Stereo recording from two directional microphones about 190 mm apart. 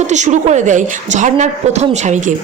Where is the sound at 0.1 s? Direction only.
40° right (ahead or behind).